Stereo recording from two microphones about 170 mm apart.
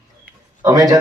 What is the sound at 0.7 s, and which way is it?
Speech, 20° right (ahead or behind).